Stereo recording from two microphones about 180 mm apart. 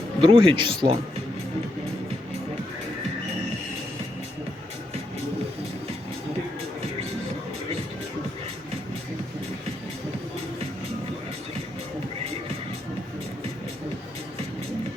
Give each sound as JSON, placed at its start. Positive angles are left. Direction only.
{"t": 0.2, "sound": "speech", "side_deg": -30}